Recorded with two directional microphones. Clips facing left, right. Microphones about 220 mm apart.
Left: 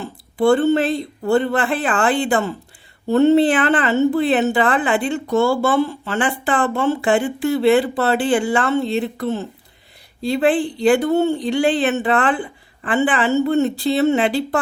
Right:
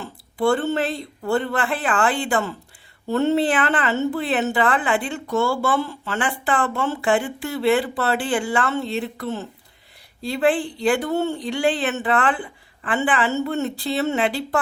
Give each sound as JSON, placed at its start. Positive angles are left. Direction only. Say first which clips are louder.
{"t": 0.0, "sound": "speech", "louder": "left 4 dB", "side_deg": 20}